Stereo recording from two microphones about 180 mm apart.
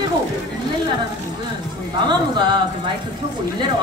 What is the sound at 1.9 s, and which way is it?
Speech, 25° right (ahead or behind).